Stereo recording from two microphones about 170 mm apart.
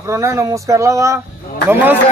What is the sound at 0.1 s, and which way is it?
Speech, 15° right (ahead or behind).